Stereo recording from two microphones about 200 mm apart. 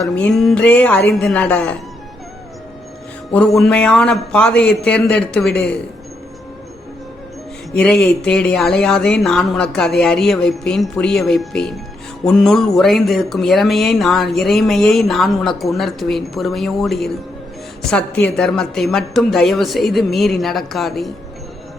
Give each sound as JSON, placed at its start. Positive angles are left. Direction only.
{"t": 0.0, "sound": "a woman's voice", "side_deg": 0}
{"t": 3.3, "sound": "speech", "side_deg": 0}
{"t": 7.8, "sound": "speech", "side_deg": 5}